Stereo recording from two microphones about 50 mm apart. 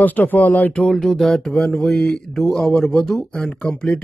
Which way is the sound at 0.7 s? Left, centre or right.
Centre.